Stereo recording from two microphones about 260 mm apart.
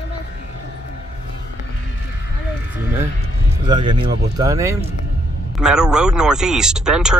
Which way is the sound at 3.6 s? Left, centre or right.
Centre.